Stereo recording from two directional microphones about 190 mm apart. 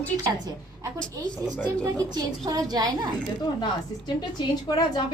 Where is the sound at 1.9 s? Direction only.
20° right (ahead or behind).